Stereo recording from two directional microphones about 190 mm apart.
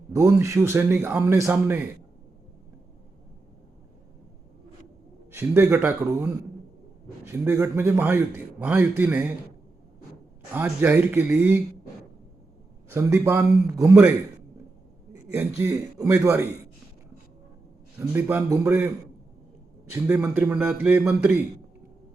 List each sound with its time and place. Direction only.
0.1 s a man's voice: 15° right (ahead or behind)
5.3 s a man's voice: 10° right (ahead or behind)
10.5 s a man's voice: 10° right (ahead or behind)
12.9 s a man's voice: 10° right (ahead or behind)
15.1 s a man's voice: 15° right (ahead or behind)
18.1 s a man's voice: 10° right (ahead or behind)